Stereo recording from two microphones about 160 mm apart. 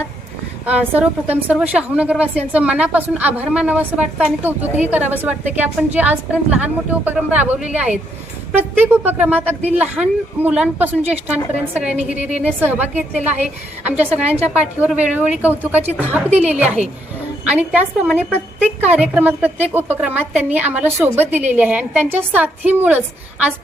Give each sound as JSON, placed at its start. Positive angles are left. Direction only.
{"t": 0.6, "sound": "a woman's voice", "side_deg": -10}
{"t": 14.3, "sound": "a woman's voice", "side_deg": -40}
{"t": 14.5, "sound": "a woman's voice", "side_deg": -10}
{"t": 16.6, "sound": "a woman's voice", "side_deg": -45}
{"t": 17.4, "sound": "a woman's voice", "side_deg": -10}